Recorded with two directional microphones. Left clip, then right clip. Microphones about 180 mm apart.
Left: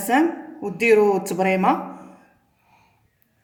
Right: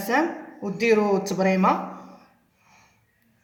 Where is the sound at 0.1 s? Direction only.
55° left (ahead or behind).